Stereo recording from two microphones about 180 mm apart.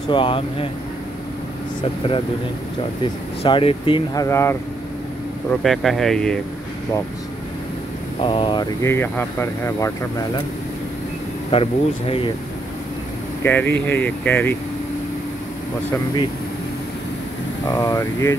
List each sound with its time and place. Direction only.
0.1 s speech: 30° left (ahead or behind)
1.8 s speech: 30° left (ahead or behind)
3.4 s speech: 30° left (ahead or behind)
5.6 s speech: centre (ahead or behind)
8.2 s speech: 25° left (ahead or behind)
8.8 s speech: 10° left (ahead or behind)
11.5 s speech: 30° left (ahead or behind)
13.4 s speech: 10° left (ahead or behind)
17.6 s speech: 20° left (ahead or behind)